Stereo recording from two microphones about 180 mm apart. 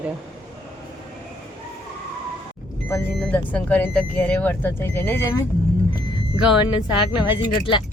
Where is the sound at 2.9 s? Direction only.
5° left (ahead or behind).